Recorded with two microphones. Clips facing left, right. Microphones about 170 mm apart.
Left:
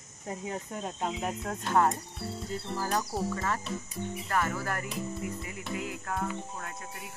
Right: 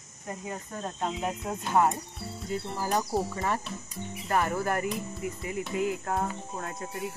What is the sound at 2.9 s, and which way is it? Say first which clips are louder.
Speech: right 4 dB; 25° right (ahead or behind).